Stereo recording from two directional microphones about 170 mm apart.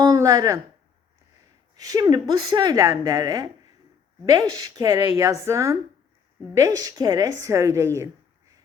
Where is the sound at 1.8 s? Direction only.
20° right (ahead or behind).